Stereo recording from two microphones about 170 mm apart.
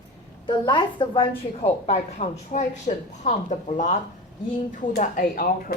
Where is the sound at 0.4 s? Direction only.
25° left (ahead or behind).